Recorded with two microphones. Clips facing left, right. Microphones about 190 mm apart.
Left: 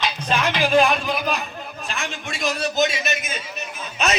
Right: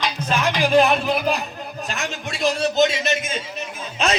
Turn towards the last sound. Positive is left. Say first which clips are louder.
# right 1 dB
turn(degrees=-30)  # may be behind; listen again after turning